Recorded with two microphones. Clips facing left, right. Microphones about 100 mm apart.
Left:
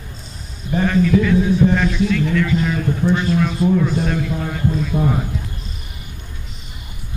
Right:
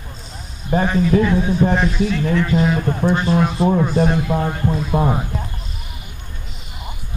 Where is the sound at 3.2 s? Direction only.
35° right (ahead or behind).